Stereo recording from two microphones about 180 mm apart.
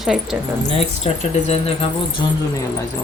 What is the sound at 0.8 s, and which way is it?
Speech, 35° left (ahead or behind).